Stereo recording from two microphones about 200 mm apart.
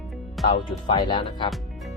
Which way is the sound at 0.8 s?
20° left (ahead or behind).